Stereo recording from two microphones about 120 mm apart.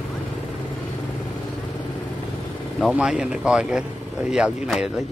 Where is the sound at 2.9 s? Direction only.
5° right (ahead or behind).